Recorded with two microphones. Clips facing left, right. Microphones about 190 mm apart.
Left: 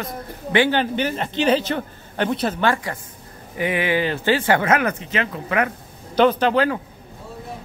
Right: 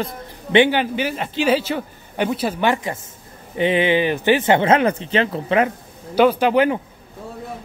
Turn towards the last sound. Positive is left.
turn(degrees=-15)  # may be behind; listen again after turning